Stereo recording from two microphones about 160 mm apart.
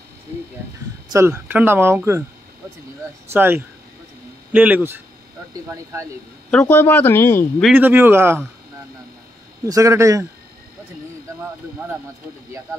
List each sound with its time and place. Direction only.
1.1 s speech: 15° right (ahead or behind)
3.3 s speech: 15° right (ahead or behind)
6.6 s speech: 10° left (ahead or behind)
7.7 s speech: 15° right (ahead or behind)
9.7 s speech: 20° right (ahead or behind)